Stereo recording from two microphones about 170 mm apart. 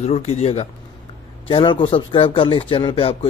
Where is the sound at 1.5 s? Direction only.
30° left (ahead or behind).